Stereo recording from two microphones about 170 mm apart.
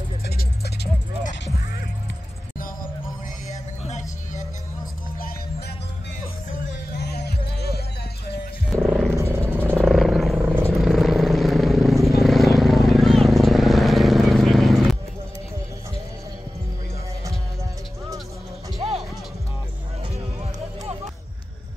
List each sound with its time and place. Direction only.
3.8 s music: 45° left (ahead or behind)
6.5 s music: 75° left (ahead or behind)
8.7 s music: centre (ahead or behind)
9.1 s a sound: 15° right (ahead or behind)
9.8 s a sound: centre (ahead or behind)
10.4 s vehicle: 10° right (ahead or behind)
10.7 s vehicle: centre (ahead or behind)
18.8 s music: 35° right (ahead or behind)